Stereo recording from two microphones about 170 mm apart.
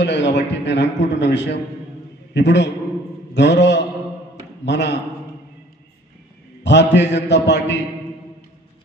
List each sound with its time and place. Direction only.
0.0 s a man's voice: 90° left
6.6 s a man's voice: 90° left